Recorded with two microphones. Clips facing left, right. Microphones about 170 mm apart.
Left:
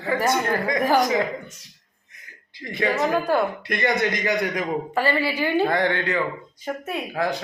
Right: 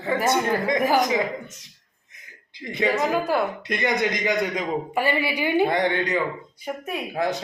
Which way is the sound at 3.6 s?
20° right (ahead or behind).